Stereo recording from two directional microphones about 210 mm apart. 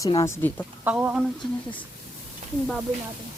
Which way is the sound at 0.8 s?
5° right (ahead or behind).